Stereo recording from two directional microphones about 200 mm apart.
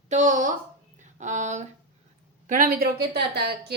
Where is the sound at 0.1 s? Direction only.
40° right (ahead or behind).